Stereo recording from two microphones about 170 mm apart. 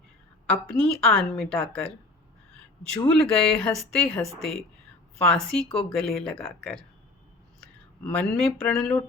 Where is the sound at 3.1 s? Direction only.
5° left (ahead or behind).